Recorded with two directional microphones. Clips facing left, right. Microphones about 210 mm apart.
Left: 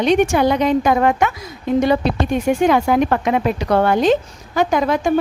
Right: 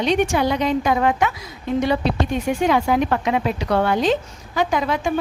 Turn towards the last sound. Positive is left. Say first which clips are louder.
# left 4 dB
turn(degrees=45)  # may be behind; listen again after turning